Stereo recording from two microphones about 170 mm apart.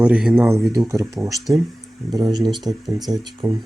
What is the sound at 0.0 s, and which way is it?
Speech, 5° right (ahead or behind).